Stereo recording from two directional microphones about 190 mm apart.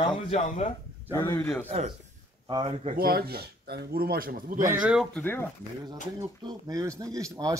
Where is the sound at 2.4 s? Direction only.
25° right (ahead or behind).